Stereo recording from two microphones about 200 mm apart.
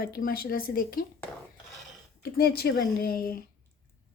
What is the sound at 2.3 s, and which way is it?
Speech, 50° left (ahead or behind).